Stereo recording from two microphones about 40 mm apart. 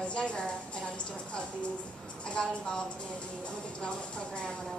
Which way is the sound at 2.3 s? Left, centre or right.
Centre.